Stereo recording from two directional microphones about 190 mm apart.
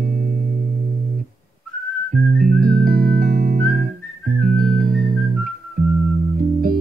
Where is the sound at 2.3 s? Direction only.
45° right (ahead or behind).